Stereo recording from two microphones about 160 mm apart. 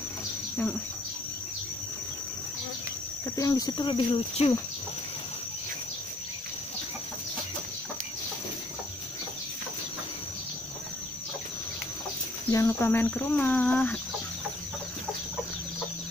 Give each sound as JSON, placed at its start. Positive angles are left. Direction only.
{"t": 3.3, "sound": "speech", "side_deg": 20}
{"t": 12.4, "sound": "speech", "side_deg": 20}